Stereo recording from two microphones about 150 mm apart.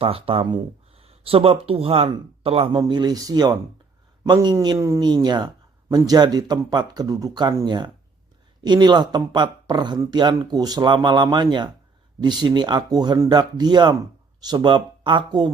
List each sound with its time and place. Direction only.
0.0 s speech: 40° right (ahead or behind)
2.7 s speech: 30° right (ahead or behind)